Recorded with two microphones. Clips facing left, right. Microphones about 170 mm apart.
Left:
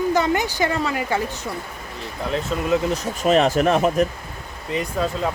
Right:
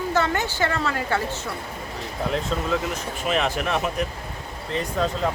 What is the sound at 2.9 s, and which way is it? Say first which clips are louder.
Speech: left 7 dB; 40° left (ahead or behind).